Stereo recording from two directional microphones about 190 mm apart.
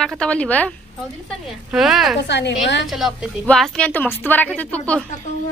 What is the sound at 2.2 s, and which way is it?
Speech, 65° left (ahead or behind).